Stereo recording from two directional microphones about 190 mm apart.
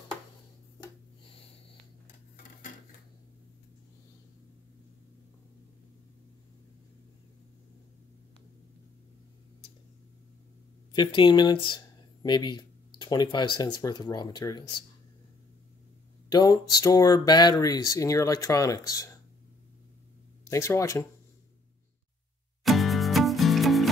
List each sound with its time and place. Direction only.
1.2 s snort: 30° left (ahead or behind)
10.9 s speech: 25° left (ahead or behind)
16.3 s speech: 20° left (ahead or behind)
20.4 s speech: 15° left (ahead or behind)
22.6 s music: centre (ahead or behind)